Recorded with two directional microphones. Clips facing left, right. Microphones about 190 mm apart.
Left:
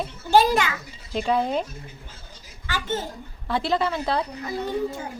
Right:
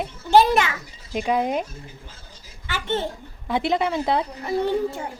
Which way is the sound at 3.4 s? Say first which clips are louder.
Right 2 dB; 20° right (ahead or behind).